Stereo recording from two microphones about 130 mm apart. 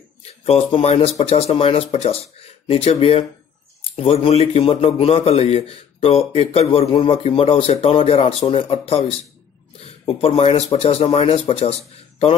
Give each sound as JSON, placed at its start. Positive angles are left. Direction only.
{"t": 0.2, "sound": "a man's voice", "side_deg": 50}